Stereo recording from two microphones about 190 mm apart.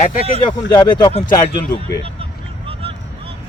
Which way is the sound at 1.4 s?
50° left (ahead or behind).